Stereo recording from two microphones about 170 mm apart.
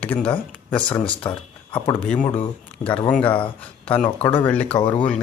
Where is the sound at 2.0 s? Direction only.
5° left (ahead or behind).